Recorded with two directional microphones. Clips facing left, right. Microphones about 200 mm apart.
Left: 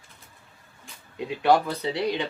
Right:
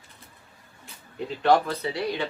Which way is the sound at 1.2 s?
15° left (ahead or behind).